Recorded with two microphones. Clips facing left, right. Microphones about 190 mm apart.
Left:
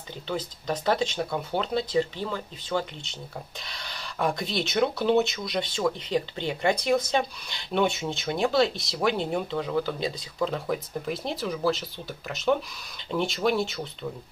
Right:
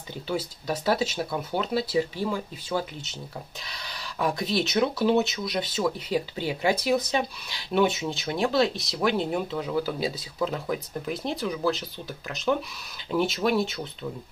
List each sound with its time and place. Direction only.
0.3 s speech: 10° right (ahead or behind)